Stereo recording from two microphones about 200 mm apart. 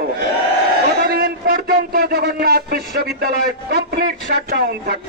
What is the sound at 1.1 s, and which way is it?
A man's voice, 45° right (ahead or behind).